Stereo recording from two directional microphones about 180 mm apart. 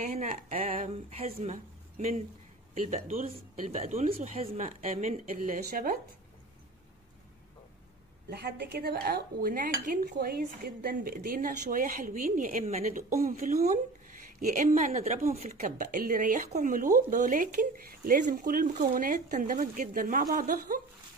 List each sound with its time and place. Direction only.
0.2 s speech: 40° right (ahead or behind)
8.3 s speech: 60° right (ahead or behind); by 13.0 s 40° right (ahead or behind)
13.1 s speech: 50° right (ahead or behind)